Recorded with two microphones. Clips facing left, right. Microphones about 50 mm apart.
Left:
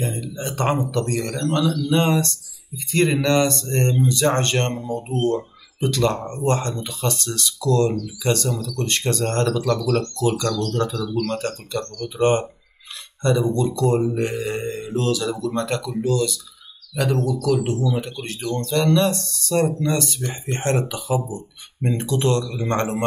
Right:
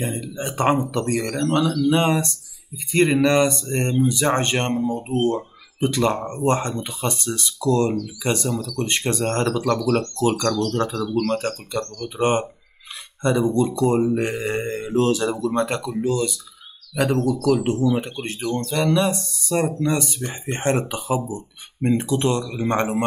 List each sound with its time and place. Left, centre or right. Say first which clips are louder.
0.0 s speech: even; right
1.9 s speech: right 1 dB; right
2.9 s mantra: right 2 dB; centre
4.0 s speech: right 2 dB; centre
8.2 s mantra: left 3 dB; centre
8.7 s speech: left 1 dB; right
22.4 s mantra: right 1 dB; right